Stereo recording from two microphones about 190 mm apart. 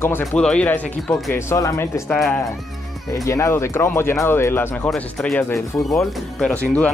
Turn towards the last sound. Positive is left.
turn(degrees=5)  # may be behind; listen again after turning